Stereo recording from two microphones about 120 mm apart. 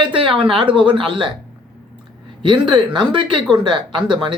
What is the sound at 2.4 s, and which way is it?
Speech, 40° right (ahead or behind).